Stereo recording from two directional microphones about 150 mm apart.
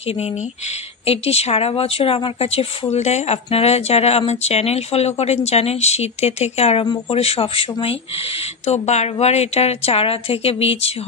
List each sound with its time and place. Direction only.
1.0 s a woman's voice: 40° left (ahead or behind)